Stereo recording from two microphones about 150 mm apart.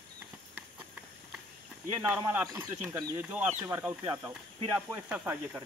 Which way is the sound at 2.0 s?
10° right (ahead or behind).